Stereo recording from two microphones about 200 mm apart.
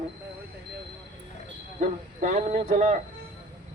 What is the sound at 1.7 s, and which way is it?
Speech, 40° right (ahead or behind).